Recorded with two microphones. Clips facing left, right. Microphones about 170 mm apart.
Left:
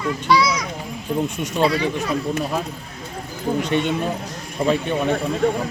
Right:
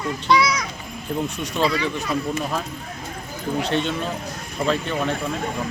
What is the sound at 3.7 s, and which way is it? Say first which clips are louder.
Speech: left 3 dB; 15° left (ahead or behind).